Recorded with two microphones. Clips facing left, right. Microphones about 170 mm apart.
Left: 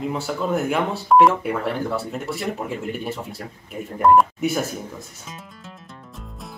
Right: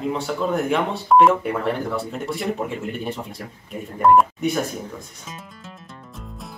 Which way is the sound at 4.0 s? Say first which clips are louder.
Even; centre (ahead or behind).